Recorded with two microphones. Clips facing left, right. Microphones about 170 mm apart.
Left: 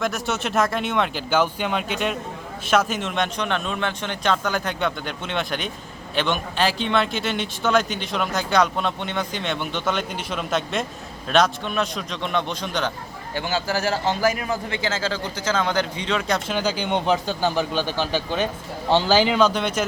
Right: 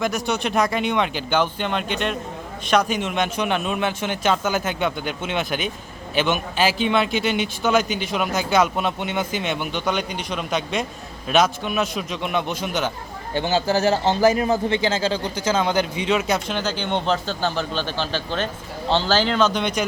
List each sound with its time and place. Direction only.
0.0 s a man's voice: centre (ahead or behind)
13.3 s a man's voice: 20° right (ahead or behind); by 16.6 s 5° right (ahead or behind)
16.6 s speech: 10° left (ahead or behind)